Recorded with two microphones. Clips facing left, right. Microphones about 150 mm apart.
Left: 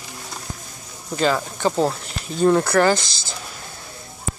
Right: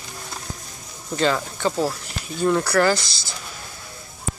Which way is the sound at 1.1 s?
10° left (ahead or behind).